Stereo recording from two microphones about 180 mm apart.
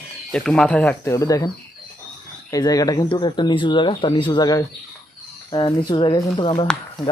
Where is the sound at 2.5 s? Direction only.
20° left (ahead or behind).